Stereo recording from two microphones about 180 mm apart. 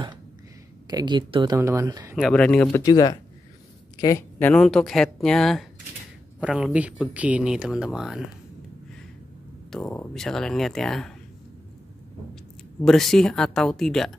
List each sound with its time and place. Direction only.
0.8 s speech: 25° right (ahead or behind)
2.1 s speech: centre (ahead or behind)
2.8 s speech: 20° left (ahead or behind); by 8.2 s 5° right (ahead or behind)
9.7 s speech: 5° left (ahead or behind)
12.8 s speech: centre (ahead or behind)